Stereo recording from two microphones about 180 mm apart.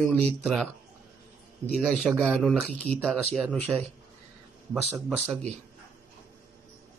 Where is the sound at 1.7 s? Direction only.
Centre (ahead or behind).